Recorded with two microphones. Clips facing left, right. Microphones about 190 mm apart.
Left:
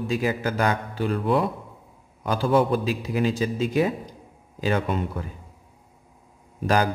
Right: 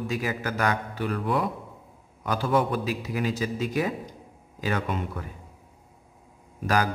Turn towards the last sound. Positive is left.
turn(degrees=25)  # may be behind; listen again after turning